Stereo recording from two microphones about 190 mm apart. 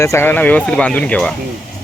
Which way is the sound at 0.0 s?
15° left (ahead or behind).